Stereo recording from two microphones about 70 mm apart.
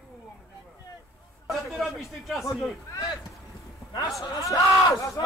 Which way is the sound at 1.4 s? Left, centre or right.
Centre.